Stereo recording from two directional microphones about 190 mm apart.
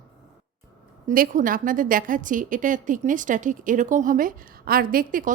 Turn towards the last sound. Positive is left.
turn(degrees=-45)  # may be behind; listen again after turning